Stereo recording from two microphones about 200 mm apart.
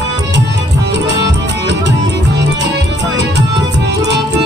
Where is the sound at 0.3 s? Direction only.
60° right (ahead or behind).